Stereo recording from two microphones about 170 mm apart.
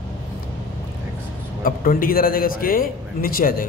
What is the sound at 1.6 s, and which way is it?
A man's voice, 55° left (ahead or behind).